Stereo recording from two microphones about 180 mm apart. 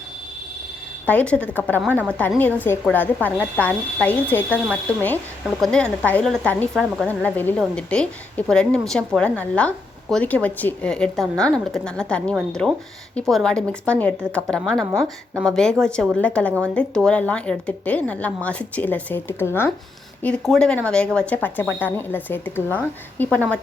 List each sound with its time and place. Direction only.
1.0 s a woman's voice: 5° left (ahead or behind)
14.8 s a woman's voice: 20° right (ahead or behind)
15.4 s a woman's voice: 5° left (ahead or behind)